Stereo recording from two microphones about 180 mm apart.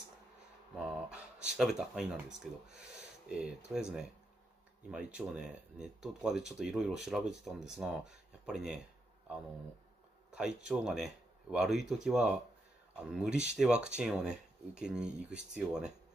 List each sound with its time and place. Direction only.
0.7 s speech: 5° right (ahead or behind)
10.3 s speech: 5° right (ahead or behind)